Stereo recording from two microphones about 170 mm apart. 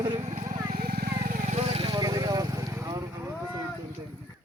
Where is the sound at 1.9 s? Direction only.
20° right (ahead or behind).